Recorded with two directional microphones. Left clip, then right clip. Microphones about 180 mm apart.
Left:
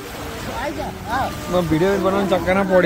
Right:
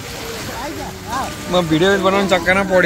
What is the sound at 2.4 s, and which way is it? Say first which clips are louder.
Speech: right 2 dB; 5° left (ahead or behind).